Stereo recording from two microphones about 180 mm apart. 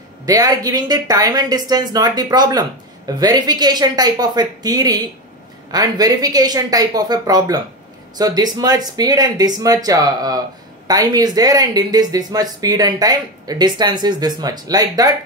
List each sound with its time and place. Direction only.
0.2 s speech: 20° right (ahead or behind)